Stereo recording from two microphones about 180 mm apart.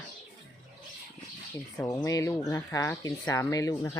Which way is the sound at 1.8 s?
15° left (ahead or behind).